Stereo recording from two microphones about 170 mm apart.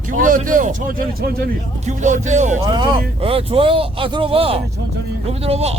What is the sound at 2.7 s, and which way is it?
Speech, 25° right (ahead or behind).